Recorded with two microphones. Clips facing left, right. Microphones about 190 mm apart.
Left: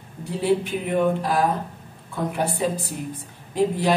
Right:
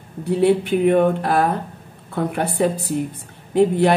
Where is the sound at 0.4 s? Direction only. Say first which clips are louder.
Right 6 dB; 60° right (ahead or behind).